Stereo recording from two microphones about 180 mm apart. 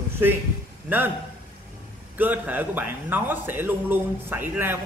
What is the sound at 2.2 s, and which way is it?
A man's voice, 10° right (ahead or behind).